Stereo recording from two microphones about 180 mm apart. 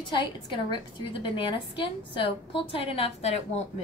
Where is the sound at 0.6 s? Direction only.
25° left (ahead or behind).